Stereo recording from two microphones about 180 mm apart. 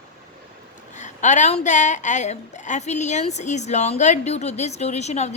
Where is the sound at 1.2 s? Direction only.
40° left (ahead or behind).